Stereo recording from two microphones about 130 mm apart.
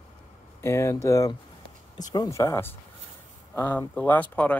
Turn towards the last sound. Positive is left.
turn(degrees=10)  # may be behind; listen again after turning